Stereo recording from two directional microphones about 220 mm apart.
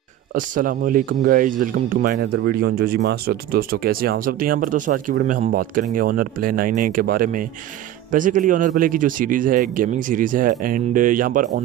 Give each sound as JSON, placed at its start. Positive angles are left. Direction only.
{"t": 0.3, "sound": "a man's voice", "side_deg": -40}